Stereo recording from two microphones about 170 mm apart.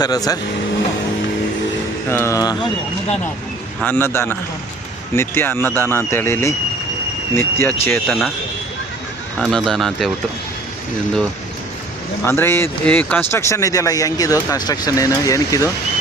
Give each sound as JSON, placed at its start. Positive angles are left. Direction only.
{"t": 0.0, "sound": "speech", "side_deg": 20}
{"t": 2.0, "sound": "speech", "side_deg": 15}
{"t": 3.8, "sound": "speech", "side_deg": 10}
{"t": 9.4, "sound": "speech", "side_deg": 0}
{"t": 12.2, "sound": "speech", "side_deg": 15}